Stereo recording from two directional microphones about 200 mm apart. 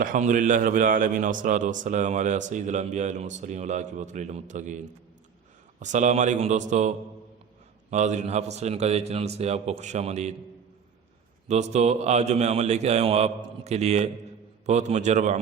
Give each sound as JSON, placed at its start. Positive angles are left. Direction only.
{"t": 0.0, "sound": "a man's voice", "side_deg": -40}
{"t": 5.8, "sound": "a man's voice", "side_deg": -35}
{"t": 11.4, "sound": "a man's voice", "side_deg": -35}